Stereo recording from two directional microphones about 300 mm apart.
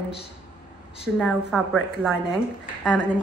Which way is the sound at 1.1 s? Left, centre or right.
Centre.